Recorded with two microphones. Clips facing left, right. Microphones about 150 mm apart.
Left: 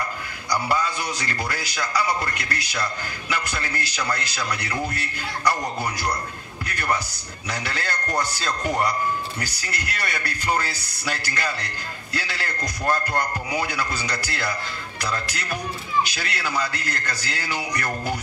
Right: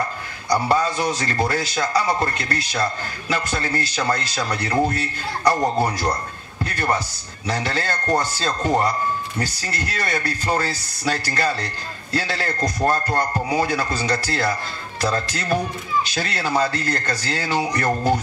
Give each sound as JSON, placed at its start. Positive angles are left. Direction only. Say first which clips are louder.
{"t": 0.5, "sound": "a man's voice", "louder": "right 5 dB", "side_deg": -25}
{"t": 11.6, "sound": "a man's voice", "louder": "right 3 dB", "side_deg": -25}